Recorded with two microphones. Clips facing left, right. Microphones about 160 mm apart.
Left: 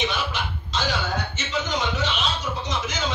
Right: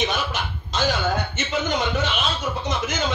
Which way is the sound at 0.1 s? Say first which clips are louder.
Right 2 dB; 45° right (ahead or behind).